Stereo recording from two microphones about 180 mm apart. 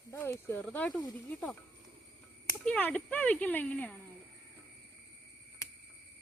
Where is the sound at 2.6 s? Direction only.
10° left (ahead or behind).